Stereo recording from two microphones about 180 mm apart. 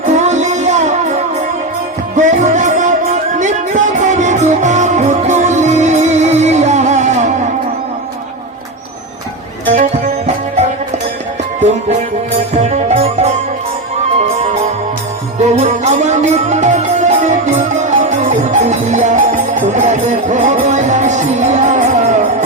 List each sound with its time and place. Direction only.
0.0 s music: 40° right (ahead or behind)
12.5 s music: 35° right (ahead or behind)
15.4 s music: 40° right (ahead or behind)